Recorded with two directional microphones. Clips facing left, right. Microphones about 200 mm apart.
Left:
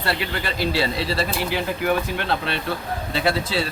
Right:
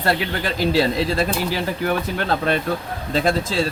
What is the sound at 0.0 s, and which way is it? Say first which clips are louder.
Speech: right 4 dB; 45° right (ahead or behind).